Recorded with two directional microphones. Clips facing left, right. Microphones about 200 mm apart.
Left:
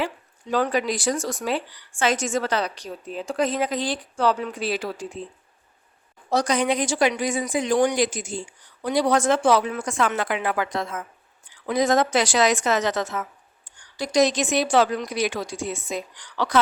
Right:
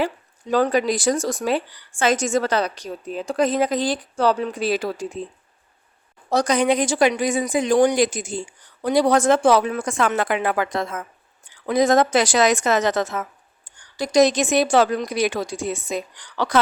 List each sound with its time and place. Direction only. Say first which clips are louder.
0.0 s speech: right 4 dB; 40° right (ahead or behind)
6.3 s speech: right 3 dB; 45° right (ahead or behind)